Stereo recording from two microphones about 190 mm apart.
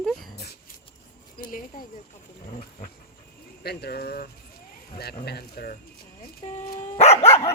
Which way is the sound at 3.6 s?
55° left (ahead or behind).